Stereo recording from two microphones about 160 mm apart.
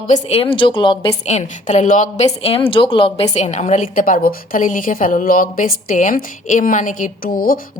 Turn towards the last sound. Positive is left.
turn(degrees=60)  # may be behind; listen again after turning